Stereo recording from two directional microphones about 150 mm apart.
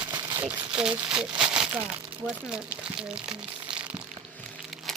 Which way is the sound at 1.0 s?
5° right (ahead or behind).